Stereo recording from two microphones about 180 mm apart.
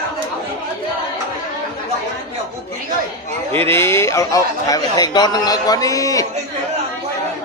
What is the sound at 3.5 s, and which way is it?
A man's voice, 15° left (ahead or behind).